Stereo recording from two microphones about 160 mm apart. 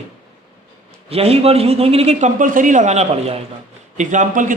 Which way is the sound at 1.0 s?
40° right (ahead or behind).